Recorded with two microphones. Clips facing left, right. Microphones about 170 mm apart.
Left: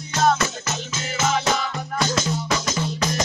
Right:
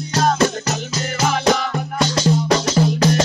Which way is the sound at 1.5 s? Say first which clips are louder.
Right 6 dB; 60° right (ahead or behind).